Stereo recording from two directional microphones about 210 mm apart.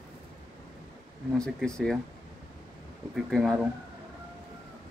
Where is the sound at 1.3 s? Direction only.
5° left (ahead or behind).